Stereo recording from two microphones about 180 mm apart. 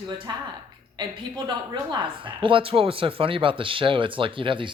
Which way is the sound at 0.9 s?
25° right (ahead or behind).